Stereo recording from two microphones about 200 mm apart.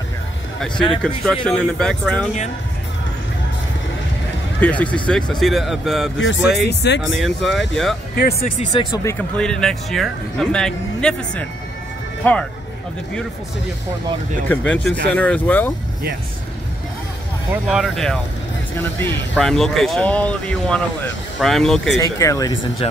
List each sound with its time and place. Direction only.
1.0 s speech: 5° left (ahead or behind)
4.6 s speech: 5° left (ahead or behind)
6.1 s speech: 70° left (ahead or behind)
6.7 s speech: 60° left (ahead or behind)
7.0 s speech: centre (ahead or behind)
8.4 s speech: 35° left (ahead or behind)
9.4 s speech: 5° left (ahead or behind)
14.5 s speech: 5° left (ahead or behind)
17.5 s speech: 5° right (ahead or behind)
18.8 s speech: 10° left (ahead or behind)
21.9 s speech: 15° left (ahead or behind)